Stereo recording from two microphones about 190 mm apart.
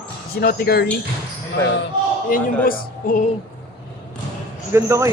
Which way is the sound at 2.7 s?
45° left (ahead or behind).